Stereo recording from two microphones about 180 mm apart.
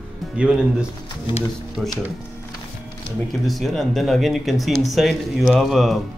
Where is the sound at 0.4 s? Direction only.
5° right (ahead or behind).